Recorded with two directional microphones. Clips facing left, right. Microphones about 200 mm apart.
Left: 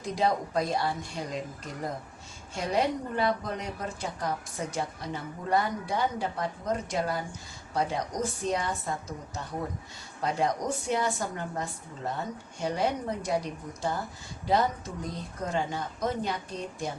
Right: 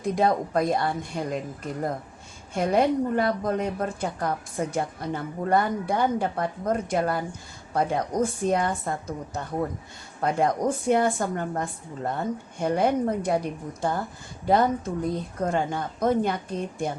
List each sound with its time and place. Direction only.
0.0 s a woman's voice: 55° right (ahead or behind)
2.6 s a woman's voice: 55° right (ahead or behind)